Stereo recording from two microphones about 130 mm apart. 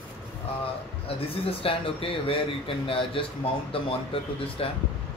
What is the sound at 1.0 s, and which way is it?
Speech, 45° left (ahead or behind).